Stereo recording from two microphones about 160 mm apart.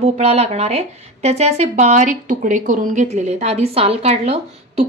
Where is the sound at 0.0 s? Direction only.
40° right (ahead or behind).